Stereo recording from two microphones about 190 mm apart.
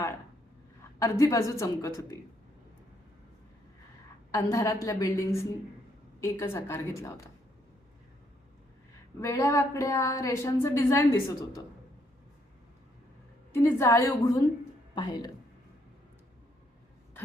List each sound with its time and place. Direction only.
0.9 s a woman's voice: 15° left (ahead or behind)
4.3 s a woman's voice: 15° left (ahead or behind)
9.2 s a woman's voice: 15° left (ahead or behind)
13.5 s a woman's voice: 15° left (ahead or behind)